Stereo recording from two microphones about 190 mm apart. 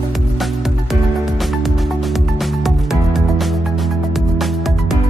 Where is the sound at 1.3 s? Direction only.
Centre (ahead or behind).